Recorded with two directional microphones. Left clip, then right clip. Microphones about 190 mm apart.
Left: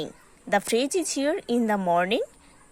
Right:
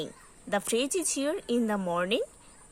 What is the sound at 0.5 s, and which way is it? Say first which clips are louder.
A woman's voice: left 5 dB; 20° left (ahead or behind).